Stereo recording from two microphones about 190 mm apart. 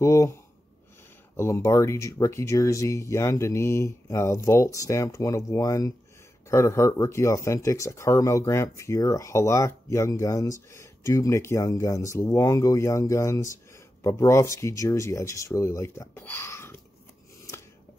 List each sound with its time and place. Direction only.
0.0 s speech: 15° left (ahead or behind)